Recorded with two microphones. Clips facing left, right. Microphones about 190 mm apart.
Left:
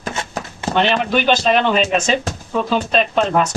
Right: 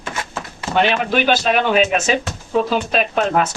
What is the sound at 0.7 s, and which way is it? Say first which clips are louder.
A man's voice: even; 5° right (ahead or behind).